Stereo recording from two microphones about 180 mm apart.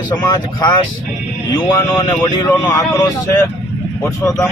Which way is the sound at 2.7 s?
20° left (ahead or behind).